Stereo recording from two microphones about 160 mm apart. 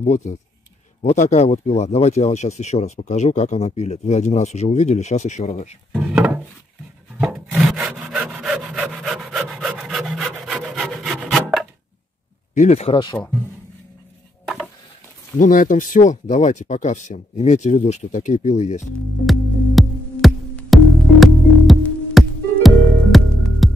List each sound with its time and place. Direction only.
0.0 s speech: 45° left (ahead or behind)
5.9 s wood: 10° right (ahead or behind)
12.5 s speech: 45° left (ahead or behind)
14.4 s stir: centre (ahead or behind)
15.3 s speech: 55° left (ahead or behind)
19.2 s music: centre (ahead or behind)